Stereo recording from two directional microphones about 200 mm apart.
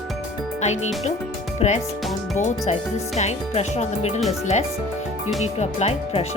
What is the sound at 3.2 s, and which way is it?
Speech, 35° left (ahead or behind).